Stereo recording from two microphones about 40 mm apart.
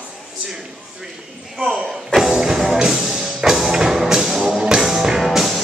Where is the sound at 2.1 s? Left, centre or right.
Centre.